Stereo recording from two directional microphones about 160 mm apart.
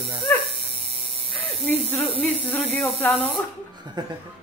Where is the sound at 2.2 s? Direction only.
10° left (ahead or behind).